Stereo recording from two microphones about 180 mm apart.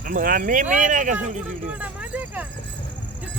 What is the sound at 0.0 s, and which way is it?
Speech, 50° right (ahead or behind).